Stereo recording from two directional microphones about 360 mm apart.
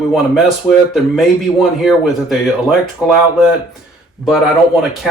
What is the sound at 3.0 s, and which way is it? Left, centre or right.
Speech, centre.